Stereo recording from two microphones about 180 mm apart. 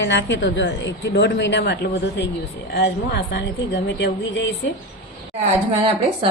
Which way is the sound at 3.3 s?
75° left (ahead or behind).